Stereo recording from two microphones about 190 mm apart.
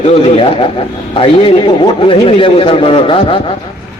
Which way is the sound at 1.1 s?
30° left (ahead or behind).